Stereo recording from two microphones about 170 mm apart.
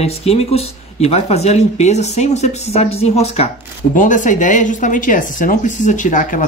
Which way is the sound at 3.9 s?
50° left (ahead or behind).